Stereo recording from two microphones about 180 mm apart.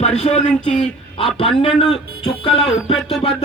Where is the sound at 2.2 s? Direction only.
30° left (ahead or behind).